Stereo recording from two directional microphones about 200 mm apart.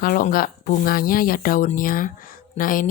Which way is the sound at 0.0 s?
45° left (ahead or behind).